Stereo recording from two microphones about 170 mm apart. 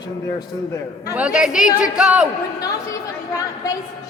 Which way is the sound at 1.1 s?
5° right (ahead or behind).